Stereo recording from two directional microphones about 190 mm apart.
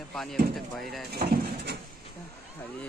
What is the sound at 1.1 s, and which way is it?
Speech, 55° right (ahead or behind).